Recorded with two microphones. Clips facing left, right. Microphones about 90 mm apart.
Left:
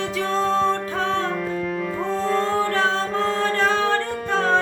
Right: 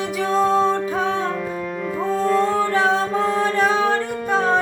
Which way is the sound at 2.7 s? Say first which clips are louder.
Right 3 dB; 15° right (ahead or behind).